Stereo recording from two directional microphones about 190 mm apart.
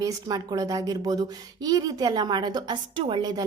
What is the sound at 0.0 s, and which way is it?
A woman's voice, 20° right (ahead or behind).